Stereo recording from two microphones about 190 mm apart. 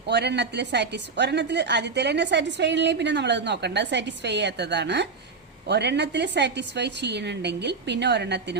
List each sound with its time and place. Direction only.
0.1 s a woman's voice: 65° right (ahead or behind)